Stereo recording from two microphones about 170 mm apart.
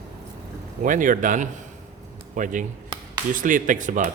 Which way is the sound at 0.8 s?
50° right (ahead or behind).